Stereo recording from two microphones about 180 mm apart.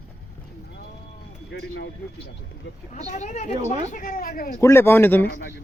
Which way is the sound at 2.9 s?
40° left (ahead or behind).